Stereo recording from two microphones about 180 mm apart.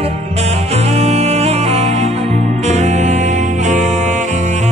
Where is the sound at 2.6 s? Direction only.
40° right (ahead or behind).